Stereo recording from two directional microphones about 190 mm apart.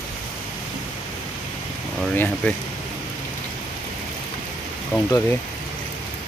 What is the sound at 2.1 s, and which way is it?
Speech, 10° left (ahead or behind).